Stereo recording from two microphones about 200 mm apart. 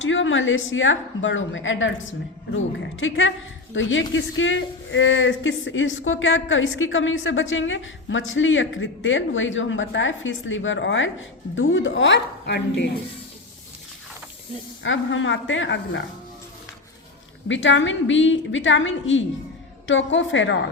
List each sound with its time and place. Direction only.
0.0 s speech: 70° left (ahead or behind)
3.0 s a woman's voice: 70° left (ahead or behind)
14.8 s speech: 70° left (ahead or behind)
17.5 s speech: 65° left (ahead or behind)